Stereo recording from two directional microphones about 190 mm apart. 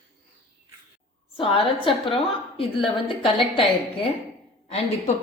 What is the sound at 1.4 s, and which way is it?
Speech, 30° left (ahead or behind).